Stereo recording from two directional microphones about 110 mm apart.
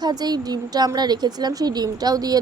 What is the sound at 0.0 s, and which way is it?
Speech, 40° right (ahead or behind).